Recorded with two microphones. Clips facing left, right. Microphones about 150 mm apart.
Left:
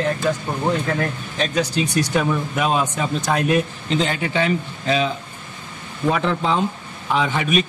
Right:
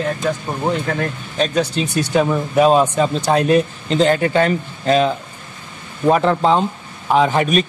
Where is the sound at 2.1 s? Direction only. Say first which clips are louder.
Right 5 dB; 30° right (ahead or behind); by 5.1 s 45° right (ahead or behind).